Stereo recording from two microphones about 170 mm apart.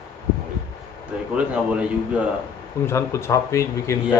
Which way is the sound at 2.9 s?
15° left (ahead or behind).